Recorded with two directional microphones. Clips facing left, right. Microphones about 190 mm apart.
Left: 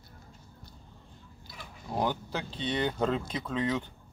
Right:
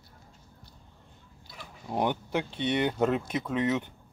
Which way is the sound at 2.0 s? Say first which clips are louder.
Right 3 dB; 20° right (ahead or behind).